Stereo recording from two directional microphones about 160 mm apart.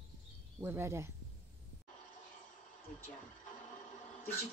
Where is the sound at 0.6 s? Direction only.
15° right (ahead or behind).